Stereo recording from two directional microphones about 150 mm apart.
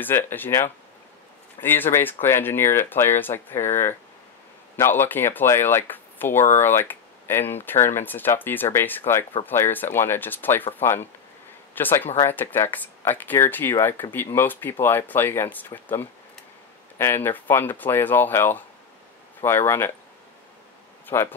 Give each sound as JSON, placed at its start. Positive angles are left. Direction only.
{"t": 0.0, "sound": "speech", "side_deg": 15}
{"t": 4.7, "sound": "speech", "side_deg": 15}
{"t": 21.1, "sound": "speech", "side_deg": 15}